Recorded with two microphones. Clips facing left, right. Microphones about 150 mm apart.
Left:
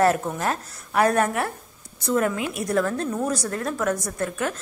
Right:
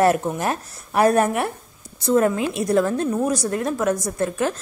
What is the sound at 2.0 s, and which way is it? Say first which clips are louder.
A woman's voice: right 5 dB; 30° right (ahead or behind).